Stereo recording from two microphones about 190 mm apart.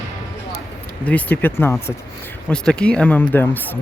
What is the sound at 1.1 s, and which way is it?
Speech, 10° left (ahead or behind).